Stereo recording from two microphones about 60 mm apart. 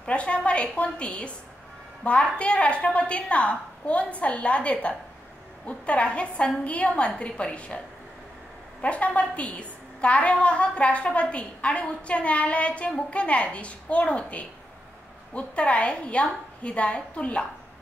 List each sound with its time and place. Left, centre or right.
0.0 s a woman's voice: centre
8.8 s a woman's voice: left